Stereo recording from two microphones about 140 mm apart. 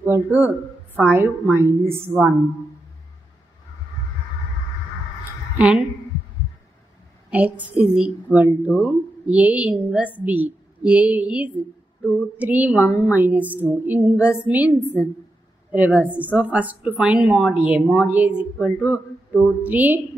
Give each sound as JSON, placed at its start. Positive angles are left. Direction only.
{"t": 0.0, "sound": "a woman's voice", "side_deg": -15}
{"t": 5.6, "sound": "a woman's voice", "side_deg": -5}
{"t": 7.2, "sound": "a woman's voice", "side_deg": -10}